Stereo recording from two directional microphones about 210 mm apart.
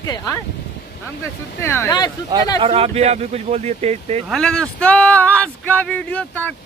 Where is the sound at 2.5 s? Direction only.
25° right (ahead or behind).